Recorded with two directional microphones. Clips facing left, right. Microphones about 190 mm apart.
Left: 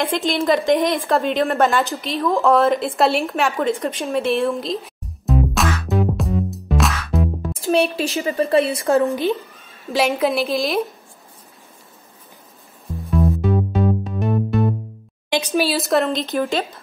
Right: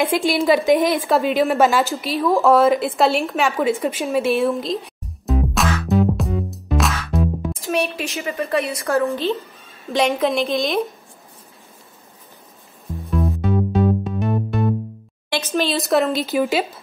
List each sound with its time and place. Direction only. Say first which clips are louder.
0.0 s a woman's voice: right 2 dB; 5° right (ahead or behind)
7.5 s speech: left 8 dB; 30° left (ahead or behind)
8.8 s a woman's voice: left 2 dB; 15° left (ahead or behind)
9.8 s speech: even; 5° left (ahead or behind)
13.1 s music: left 2 dB; centre (ahead or behind)
15.2 s speech: left 2 dB; 15° left (ahead or behind); by 16.8 s 5° right (ahead or behind)